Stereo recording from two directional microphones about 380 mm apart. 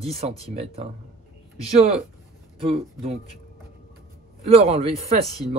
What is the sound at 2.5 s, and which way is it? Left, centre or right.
Speech, centre.